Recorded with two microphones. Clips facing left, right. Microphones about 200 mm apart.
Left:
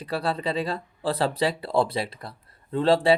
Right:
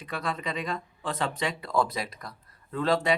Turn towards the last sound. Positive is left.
turn(degrees=30)  # may be behind; listen again after turning